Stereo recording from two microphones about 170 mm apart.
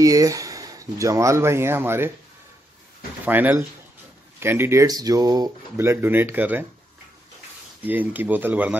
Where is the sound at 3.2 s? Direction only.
10° right (ahead or behind).